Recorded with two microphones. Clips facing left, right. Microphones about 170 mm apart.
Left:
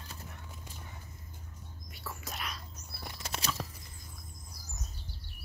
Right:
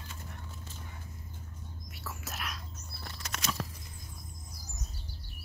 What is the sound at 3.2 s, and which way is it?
Bird flight, 30° left (ahead or behind).